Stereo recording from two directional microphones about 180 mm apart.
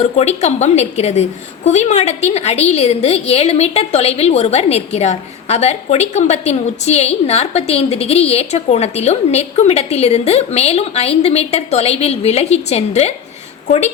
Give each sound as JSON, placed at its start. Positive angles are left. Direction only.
{"t": 0.0, "sound": "a woman's voice", "side_deg": 35}